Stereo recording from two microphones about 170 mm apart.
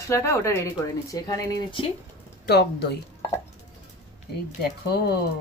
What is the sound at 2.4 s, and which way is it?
Speech, 75° left (ahead or behind).